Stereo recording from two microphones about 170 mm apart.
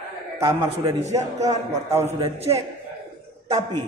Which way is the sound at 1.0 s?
40° right (ahead or behind).